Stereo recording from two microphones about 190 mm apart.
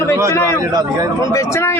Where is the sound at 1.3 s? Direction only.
15° left (ahead or behind).